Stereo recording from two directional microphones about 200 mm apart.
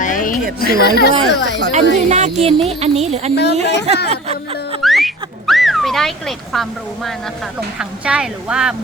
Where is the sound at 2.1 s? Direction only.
35° right (ahead or behind).